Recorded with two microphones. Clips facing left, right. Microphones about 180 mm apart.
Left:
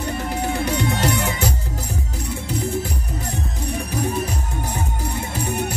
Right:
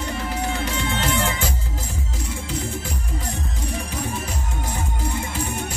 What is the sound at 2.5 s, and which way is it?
Music, 15° left (ahead or behind).